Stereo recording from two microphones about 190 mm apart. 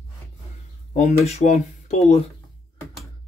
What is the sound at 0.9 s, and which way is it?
Speech, 40° left (ahead or behind).